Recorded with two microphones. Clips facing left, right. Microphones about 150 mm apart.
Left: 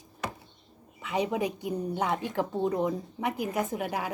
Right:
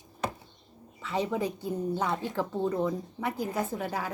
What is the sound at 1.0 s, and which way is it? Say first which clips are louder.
A woman's voice: left 1 dB; 15° left (ahead or behind).